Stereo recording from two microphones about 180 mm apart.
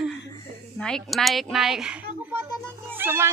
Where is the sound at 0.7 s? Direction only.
5° left (ahead or behind).